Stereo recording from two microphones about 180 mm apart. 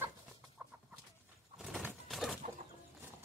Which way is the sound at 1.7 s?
Centre (ahead or behind).